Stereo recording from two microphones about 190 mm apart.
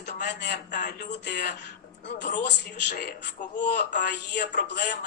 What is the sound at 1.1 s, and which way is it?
Speech, 60° left (ahead or behind).